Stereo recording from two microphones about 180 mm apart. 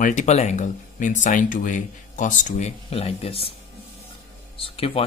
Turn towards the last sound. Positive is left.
turn(degrees=30)  # may be behind; listen again after turning